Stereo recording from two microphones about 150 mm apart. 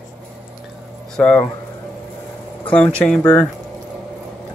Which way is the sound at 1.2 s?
5° left (ahead or behind).